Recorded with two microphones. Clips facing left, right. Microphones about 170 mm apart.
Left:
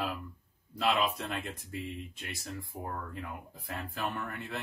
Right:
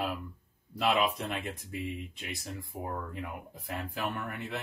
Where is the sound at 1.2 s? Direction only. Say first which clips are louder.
Right 2 dB; 15° right (ahead or behind).